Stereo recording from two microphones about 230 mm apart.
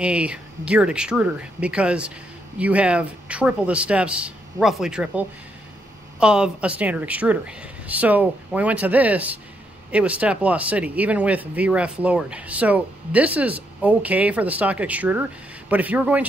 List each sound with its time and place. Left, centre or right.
0.0 s speech: centre